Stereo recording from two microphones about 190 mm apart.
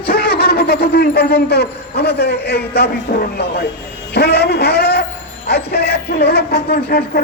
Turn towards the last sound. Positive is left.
turn(degrees=55)  # may be behind; listen again after turning